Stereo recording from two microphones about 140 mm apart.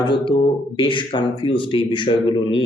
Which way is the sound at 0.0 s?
35° left (ahead or behind).